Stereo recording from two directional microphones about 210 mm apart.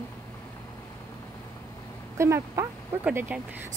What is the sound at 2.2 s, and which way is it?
Speech, 15° right (ahead or behind).